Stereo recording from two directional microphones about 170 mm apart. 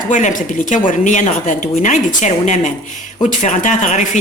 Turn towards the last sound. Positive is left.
turn(degrees=45)  # may be behind; listen again after turning